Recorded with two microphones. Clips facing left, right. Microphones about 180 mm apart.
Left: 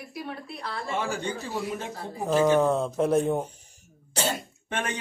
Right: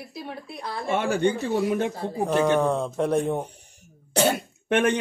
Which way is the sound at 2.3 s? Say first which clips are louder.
Left 1 dB; centre (ahead or behind).